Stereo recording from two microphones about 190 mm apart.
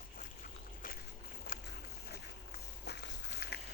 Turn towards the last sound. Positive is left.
turn(degrees=60)  # may be behind; listen again after turning